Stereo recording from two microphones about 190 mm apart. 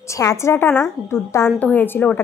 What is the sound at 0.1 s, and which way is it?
A woman's voice, 15° left (ahead or behind).